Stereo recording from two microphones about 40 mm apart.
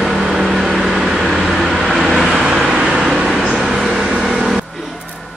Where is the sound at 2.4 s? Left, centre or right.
Centre.